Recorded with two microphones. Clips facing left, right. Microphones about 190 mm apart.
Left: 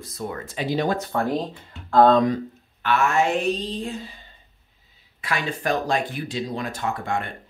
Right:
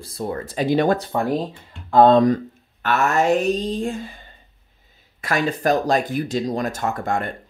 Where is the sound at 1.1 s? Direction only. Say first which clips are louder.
Right 2 dB; 15° right (ahead or behind).